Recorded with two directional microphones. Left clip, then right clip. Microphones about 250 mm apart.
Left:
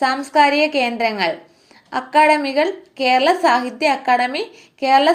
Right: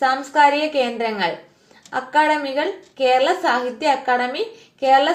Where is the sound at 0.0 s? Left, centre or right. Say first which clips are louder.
Left 1 dB; left.